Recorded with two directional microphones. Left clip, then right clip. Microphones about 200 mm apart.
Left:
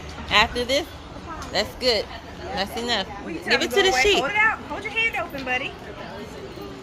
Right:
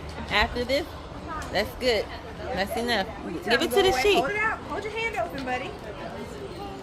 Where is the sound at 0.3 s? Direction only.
10° left (ahead or behind).